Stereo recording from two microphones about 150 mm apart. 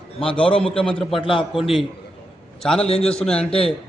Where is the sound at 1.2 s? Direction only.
35° left (ahead or behind).